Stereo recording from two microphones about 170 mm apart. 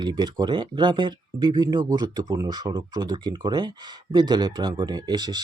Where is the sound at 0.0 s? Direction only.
25° right (ahead or behind).